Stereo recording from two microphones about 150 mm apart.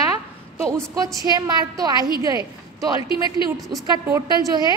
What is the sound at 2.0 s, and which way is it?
Speech, 30° left (ahead or behind).